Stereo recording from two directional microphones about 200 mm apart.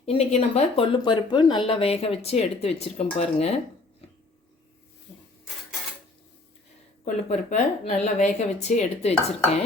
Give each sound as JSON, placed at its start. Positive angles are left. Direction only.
{"t": 0.0, "sound": "a woman's voice", "side_deg": 30}
{"t": 7.0, "sound": "a woman's voice", "side_deg": 35}